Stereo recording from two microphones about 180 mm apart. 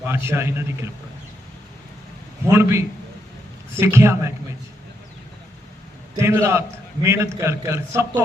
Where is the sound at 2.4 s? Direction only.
15° right (ahead or behind).